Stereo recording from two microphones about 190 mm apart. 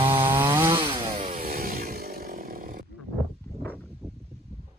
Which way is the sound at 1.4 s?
50° right (ahead or behind).